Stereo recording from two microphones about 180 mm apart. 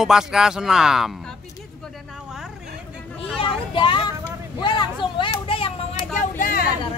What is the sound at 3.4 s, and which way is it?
Children playing, 30° left (ahead or behind).